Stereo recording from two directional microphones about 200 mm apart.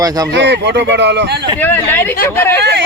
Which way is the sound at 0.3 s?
60° right (ahead or behind).